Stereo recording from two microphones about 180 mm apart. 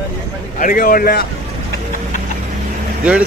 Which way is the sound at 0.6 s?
50° left (ahead or behind).